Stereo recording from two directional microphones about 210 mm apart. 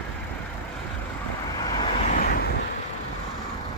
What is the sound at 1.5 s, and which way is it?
Vehicle, 20° left (ahead or behind).